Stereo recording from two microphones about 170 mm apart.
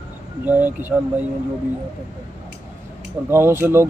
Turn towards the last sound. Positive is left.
turn(degrees=-15)  # may be behind; listen again after turning